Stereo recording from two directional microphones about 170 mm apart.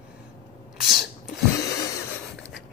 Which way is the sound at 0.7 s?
Centre (ahead or behind).